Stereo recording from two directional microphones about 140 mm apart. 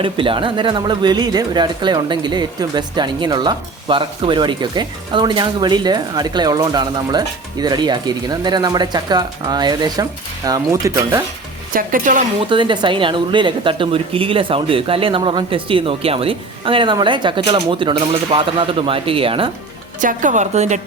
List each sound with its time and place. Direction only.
0.0 s speech: 40° right (ahead or behind); by 11.2 s 25° right (ahead or behind)
11.7 s speech: 80° right
12.4 s speech: 35° right (ahead or behind)
20.0 s a woman's voice: 65° right (ahead or behind)